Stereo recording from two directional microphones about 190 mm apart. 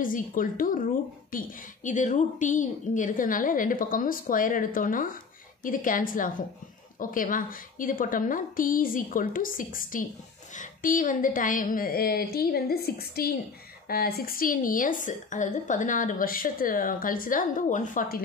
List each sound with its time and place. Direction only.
0.0 s a woman's voice: 45° left (ahead or behind)